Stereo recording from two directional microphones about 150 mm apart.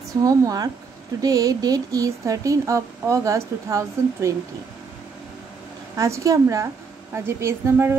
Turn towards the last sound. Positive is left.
turn(degrees=-15)  # may be behind; listen again after turning